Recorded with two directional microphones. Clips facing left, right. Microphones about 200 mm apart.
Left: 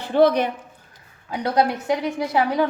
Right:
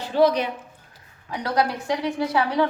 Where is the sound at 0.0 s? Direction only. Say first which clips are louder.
Left 2 dB; 55° left (ahead or behind).